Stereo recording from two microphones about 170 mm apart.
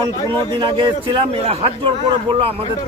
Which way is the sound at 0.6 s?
30° right (ahead or behind).